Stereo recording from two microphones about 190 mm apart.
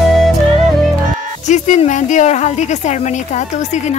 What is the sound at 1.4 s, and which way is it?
A woman's voice, 40° left (ahead or behind).